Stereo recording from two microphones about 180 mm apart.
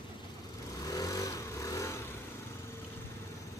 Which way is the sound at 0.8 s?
20° left (ahead or behind).